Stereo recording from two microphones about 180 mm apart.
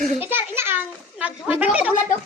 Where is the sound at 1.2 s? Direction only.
5° right (ahead or behind).